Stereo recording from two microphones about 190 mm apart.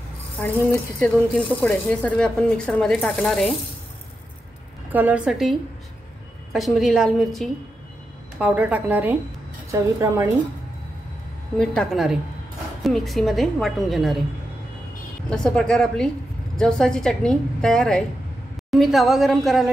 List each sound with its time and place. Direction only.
0.4 s speech: 10° left (ahead or behind)
4.9 s a woman's voice: 5° right (ahead or behind)
11.5 s speech: 5° left (ahead or behind)
15.2 s speech: 5° left (ahead or behind)